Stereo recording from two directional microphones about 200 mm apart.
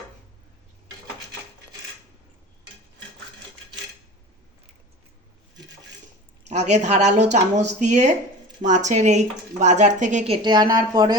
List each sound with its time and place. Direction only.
6.5 s speech: 35° right (ahead or behind)
10.4 s speech: 20° right (ahead or behind)